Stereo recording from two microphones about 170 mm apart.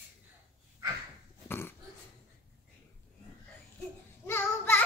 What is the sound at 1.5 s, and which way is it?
Dog, 15° left (ahead or behind).